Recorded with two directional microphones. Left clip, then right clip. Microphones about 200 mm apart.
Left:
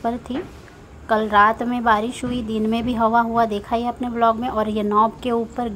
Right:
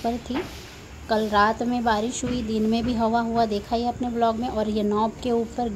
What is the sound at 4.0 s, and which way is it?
A woman's voice, centre (ahead or behind).